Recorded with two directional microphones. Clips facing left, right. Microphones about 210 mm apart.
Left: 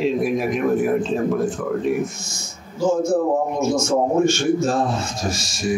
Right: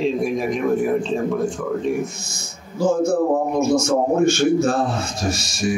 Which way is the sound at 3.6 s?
60° right (ahead or behind).